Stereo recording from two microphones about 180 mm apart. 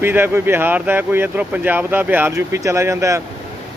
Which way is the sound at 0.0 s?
10° right (ahead or behind).